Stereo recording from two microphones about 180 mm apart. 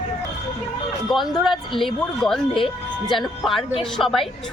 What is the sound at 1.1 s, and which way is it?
Speech, centre (ahead or behind).